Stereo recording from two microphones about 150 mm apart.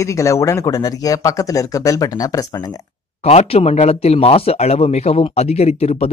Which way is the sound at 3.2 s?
45° left (ahead or behind).